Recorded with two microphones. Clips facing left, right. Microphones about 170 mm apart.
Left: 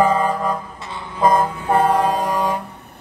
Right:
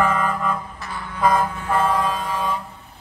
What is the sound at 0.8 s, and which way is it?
Music, 25° left (ahead or behind).